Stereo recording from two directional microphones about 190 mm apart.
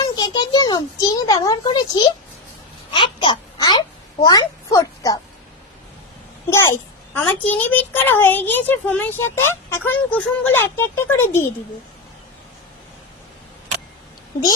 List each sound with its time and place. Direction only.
0.2 s a child's voice: 20° left (ahead or behind)
2.9 s a sound: 25° left (ahead or behind)
6.5 s a child's voice: 15° left (ahead or behind)